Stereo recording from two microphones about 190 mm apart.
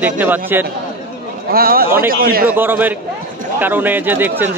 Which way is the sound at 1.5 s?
50° right (ahead or behind).